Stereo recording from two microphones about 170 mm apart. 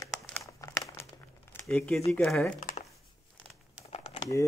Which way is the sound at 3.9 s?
40° left (ahead or behind).